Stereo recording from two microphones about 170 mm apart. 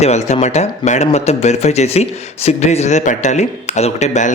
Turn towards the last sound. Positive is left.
turn(degrees=45)  # may be behind; listen again after turning